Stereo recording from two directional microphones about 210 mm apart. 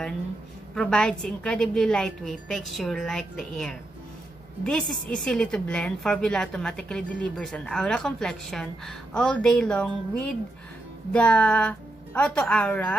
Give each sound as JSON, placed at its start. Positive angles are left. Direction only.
{"t": 0.7, "sound": "a woman's voice", "side_deg": 5}